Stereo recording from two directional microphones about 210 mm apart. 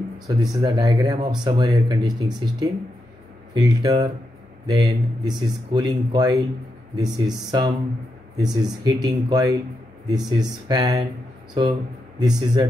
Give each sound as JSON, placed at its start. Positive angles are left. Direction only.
{"t": 0.3, "sound": "speech", "side_deg": -15}
{"t": 12.2, "sound": "speech", "side_deg": -20}